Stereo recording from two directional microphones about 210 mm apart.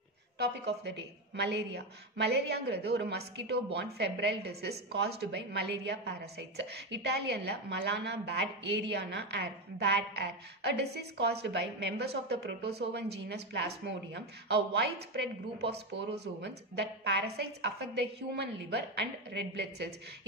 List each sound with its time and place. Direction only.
0.4 s a woman's voice: 55° right (ahead or behind)